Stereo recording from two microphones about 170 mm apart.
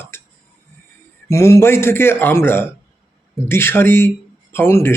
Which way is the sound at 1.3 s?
15° left (ahead or behind).